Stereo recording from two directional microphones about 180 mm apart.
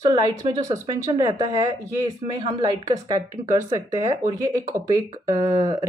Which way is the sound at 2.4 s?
25° right (ahead or behind).